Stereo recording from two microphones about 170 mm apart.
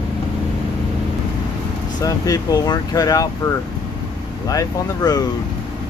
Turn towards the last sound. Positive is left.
turn(degrees=20)  # may be behind; listen again after turning